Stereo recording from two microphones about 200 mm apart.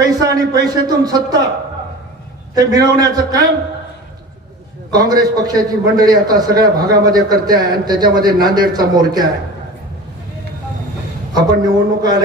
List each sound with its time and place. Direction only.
0.0 s a man's voice: 20° right (ahead or behind)
2.5 s a man's voice: 20° right (ahead or behind)
4.9 s a man's voice: 20° right (ahead or behind)
11.3 s a man's voice: 20° right (ahead or behind)